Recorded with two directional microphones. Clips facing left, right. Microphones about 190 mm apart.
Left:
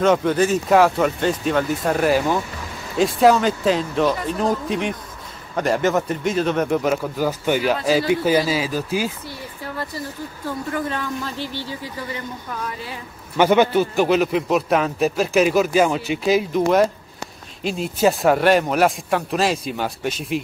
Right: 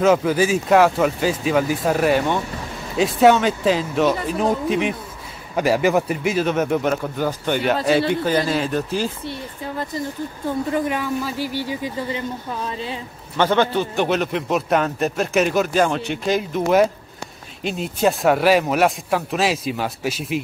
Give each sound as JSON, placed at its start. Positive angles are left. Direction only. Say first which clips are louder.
{"t": 0.0, "sound": "a man's voice", "louder": "right 1 dB", "side_deg": -5}
{"t": 10.7, "sound": "speech", "louder": "right 2 dB", "side_deg": -15}
{"t": 13.4, "sound": "a man's voice", "louder": "left 3 dB", "side_deg": 10}